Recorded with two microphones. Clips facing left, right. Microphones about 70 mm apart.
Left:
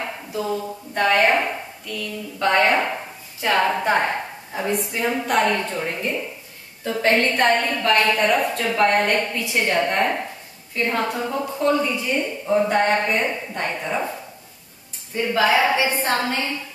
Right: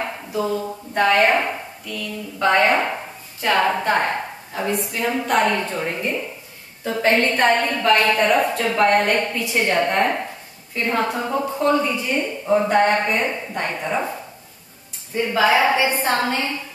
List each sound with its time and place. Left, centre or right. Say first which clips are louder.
0.9 s a woman's voice: right 1 dB; centre
11.1 s a woman's voice: right 2 dB; centre
15.1 s a woman's voice: right 1 dB; centre